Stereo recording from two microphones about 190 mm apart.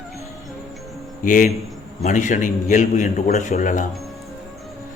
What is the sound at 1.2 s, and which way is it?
A man's voice, 45° left (ahead or behind).